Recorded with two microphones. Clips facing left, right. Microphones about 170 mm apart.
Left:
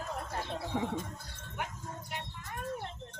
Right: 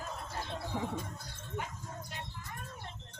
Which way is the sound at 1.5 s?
65° left (ahead or behind).